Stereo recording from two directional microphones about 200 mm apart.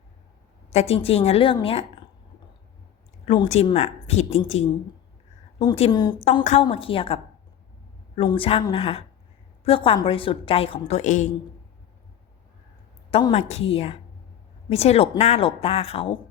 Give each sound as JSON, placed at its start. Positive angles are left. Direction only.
{"t": 0.7, "sound": "a woman's voice", "side_deg": 30}
{"t": 3.2, "sound": "a woman's voice", "side_deg": 30}
{"t": 13.1, "sound": "a woman's voice", "side_deg": 30}